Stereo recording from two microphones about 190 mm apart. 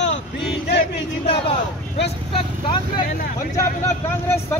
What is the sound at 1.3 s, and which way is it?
Speech, 30° left (ahead or behind).